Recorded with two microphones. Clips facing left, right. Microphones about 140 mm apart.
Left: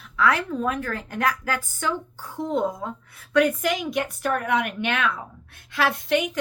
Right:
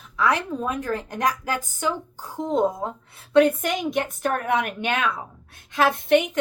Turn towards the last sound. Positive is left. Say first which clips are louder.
# right 4 dB
turn(degrees=-50)  # may be behind; listen again after turning